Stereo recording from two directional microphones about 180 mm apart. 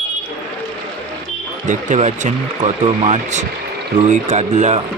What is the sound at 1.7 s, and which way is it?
Speech, 40° right (ahead or behind).